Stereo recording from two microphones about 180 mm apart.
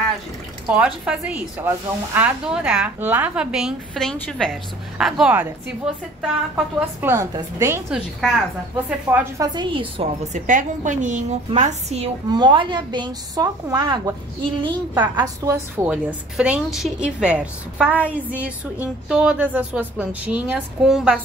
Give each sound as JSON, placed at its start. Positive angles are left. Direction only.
{"t": 0.7, "sound": "a woman's voice", "side_deg": -5}
{"t": 7.9, "sound": "speech", "side_deg": 0}
{"t": 9.1, "sound": "a woman's voice", "side_deg": -15}
{"t": 12.3, "sound": "a woman's voice", "side_deg": -25}
{"t": 15.1, "sound": "a woman's voice", "side_deg": -15}